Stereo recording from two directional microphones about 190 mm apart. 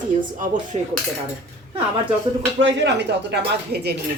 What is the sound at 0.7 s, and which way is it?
Cutlery, 35° right (ahead or behind).